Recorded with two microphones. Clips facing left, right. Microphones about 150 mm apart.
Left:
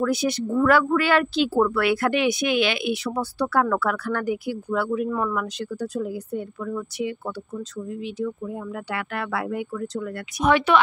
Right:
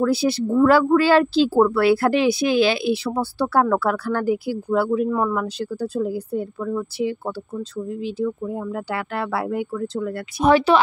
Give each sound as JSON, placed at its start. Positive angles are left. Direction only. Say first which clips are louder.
{"t": 0.0, "sound": "a woman's voice", "louder": "right 4 dB", "side_deg": -30}